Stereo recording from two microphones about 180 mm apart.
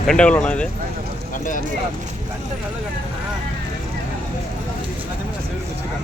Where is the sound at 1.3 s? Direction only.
45° left (ahead or behind).